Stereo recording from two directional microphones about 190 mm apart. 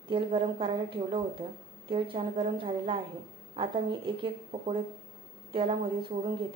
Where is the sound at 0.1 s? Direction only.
25° right (ahead or behind).